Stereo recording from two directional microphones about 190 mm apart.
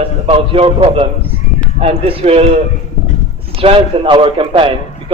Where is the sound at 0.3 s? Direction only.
30° right (ahead or behind).